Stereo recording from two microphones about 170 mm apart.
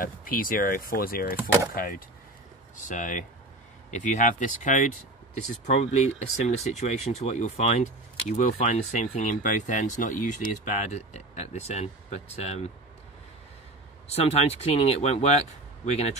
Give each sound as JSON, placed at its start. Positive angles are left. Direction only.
{"t": 0.0, "sound": "speech", "side_deg": 55}
{"t": 14.1, "sound": "speech", "side_deg": 35}